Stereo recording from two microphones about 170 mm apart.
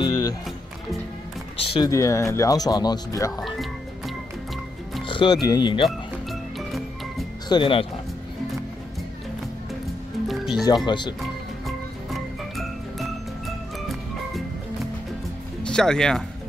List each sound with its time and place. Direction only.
0.0 s music: 25° left (ahead or behind)
1.6 s speech: 35° left (ahead or behind)
1.9 s speech: 20° left (ahead or behind)
3.3 s speech: centre (ahead or behind)
5.0 s speech: 30° left (ahead or behind)
7.4 s speech: 30° left (ahead or behind)
10.2 s music: centre (ahead or behind)
10.9 s speech: 25° left (ahead or behind)
11.6 s music: centre (ahead or behind)
15.6 s speech: 5° left (ahead or behind)